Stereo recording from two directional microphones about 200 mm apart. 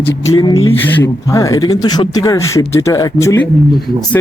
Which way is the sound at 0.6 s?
15° left (ahead or behind).